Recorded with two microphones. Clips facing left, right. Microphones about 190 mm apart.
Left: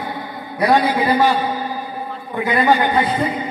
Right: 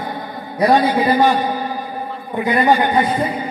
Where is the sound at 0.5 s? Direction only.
20° right (ahead or behind).